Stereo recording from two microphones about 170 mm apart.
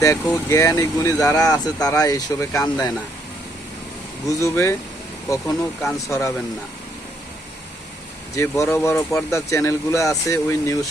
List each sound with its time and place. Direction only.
0.0 s speech: 15° left (ahead or behind)
4.3 s speech: 20° left (ahead or behind)
6.1 s speech: 15° left (ahead or behind)
8.4 s speech: 15° left (ahead or behind)